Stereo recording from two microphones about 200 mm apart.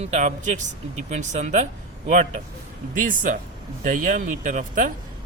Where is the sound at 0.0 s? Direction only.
35° right (ahead or behind).